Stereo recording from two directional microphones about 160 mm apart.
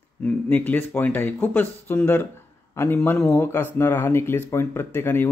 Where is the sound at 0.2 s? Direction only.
10° left (ahead or behind).